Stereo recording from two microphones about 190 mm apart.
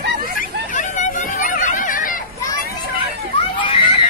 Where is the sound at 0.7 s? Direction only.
40° left (ahead or behind).